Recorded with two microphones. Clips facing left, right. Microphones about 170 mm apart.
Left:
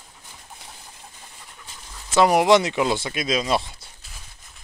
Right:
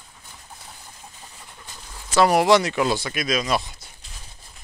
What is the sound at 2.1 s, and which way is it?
Speech, 20° left (ahead or behind).